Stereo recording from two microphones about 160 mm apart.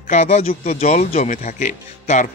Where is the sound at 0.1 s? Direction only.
40° left (ahead or behind).